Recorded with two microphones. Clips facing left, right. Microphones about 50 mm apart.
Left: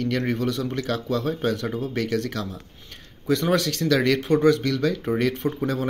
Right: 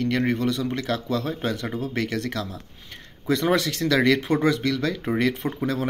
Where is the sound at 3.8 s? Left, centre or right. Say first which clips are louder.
Right 2 dB; right.